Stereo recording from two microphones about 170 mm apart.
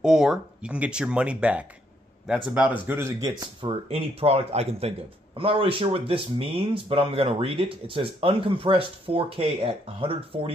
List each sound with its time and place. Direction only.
0.0 s speech: 5° right (ahead or behind)
2.9 s speech: 15° right (ahead or behind)
3.9 s speech: 35° right (ahead or behind)